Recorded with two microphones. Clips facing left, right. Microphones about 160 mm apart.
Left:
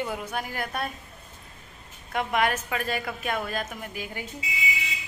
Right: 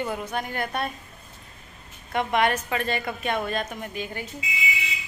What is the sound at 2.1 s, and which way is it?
A woman's voice, 5° left (ahead or behind).